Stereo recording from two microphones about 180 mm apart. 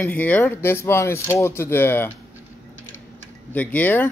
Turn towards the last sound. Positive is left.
turn(degrees=10)  # may be behind; listen again after turning